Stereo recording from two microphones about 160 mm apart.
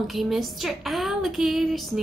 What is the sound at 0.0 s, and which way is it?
A woman's voice, centre (ahead or behind).